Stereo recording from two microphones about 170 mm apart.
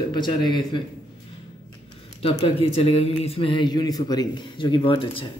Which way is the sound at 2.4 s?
35° left (ahead or behind).